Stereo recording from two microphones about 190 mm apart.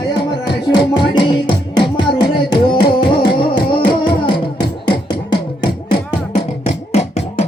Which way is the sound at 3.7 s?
25° left (ahead or behind).